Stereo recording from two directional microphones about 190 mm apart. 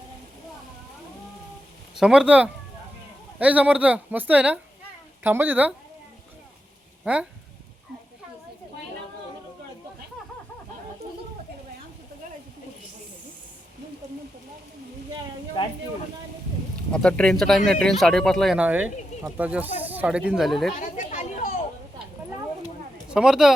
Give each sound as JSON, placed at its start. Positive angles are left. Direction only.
{"t": 2.0, "sound": "speech", "side_deg": -5}
{"t": 7.0, "sound": "speech", "side_deg": -5}
{"t": 16.9, "sound": "speech", "side_deg": 5}
{"t": 20.7, "sound": "a sound", "side_deg": 40}
{"t": 23.0, "sound": "speech", "side_deg": -5}